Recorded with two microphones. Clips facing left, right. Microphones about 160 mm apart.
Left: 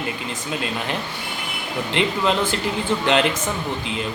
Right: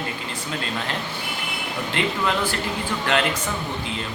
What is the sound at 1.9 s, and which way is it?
Speech, 20° left (ahead or behind).